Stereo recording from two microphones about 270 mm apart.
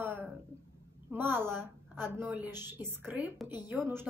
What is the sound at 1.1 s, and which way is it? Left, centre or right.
A woman's voice, centre.